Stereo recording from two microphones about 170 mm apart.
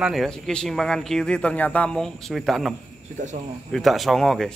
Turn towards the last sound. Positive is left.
turn(degrees=0)  # may be behind; listen again after turning